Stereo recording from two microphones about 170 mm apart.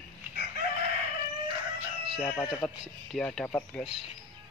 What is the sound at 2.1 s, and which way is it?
Speech, centre (ahead or behind).